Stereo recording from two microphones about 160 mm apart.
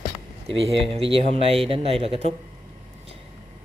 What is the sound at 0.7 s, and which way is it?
Speech, 40° right (ahead or behind).